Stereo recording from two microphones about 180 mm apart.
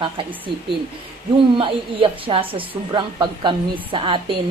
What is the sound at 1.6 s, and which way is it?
Speech, 30° right (ahead or behind).